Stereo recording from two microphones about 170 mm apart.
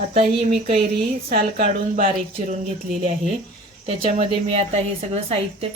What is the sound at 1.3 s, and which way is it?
Speech, 55° right (ahead or behind).